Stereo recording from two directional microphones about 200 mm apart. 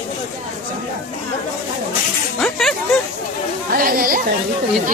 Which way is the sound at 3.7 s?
45° right (ahead or behind).